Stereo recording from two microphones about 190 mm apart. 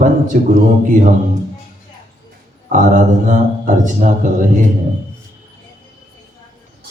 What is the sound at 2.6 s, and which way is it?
Speech, 40° right (ahead or behind).